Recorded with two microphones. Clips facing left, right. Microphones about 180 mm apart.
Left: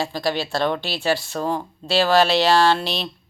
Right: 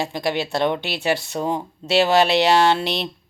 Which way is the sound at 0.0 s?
20° right (ahead or behind).